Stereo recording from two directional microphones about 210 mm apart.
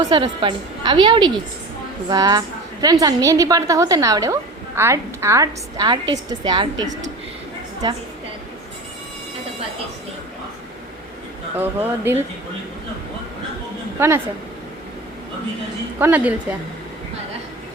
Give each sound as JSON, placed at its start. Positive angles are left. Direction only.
{"t": 0.1, "sound": "a woman's voice", "side_deg": -20}
{"t": 11.5, "sound": "a woman's voice", "side_deg": -10}
{"t": 14.0, "sound": "a woman's voice", "side_deg": -10}
{"t": 16.0, "sound": "a woman's voice", "side_deg": -10}